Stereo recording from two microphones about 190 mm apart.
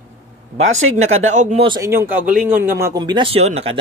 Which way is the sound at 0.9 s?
35° right (ahead or behind).